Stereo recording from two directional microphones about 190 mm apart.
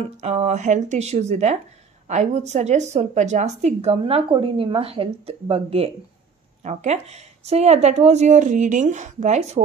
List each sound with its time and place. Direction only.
0.0 s a woman's voice: 35° right (ahead or behind)